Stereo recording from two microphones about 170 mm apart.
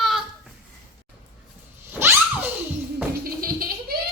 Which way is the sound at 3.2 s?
60° right (ahead or behind).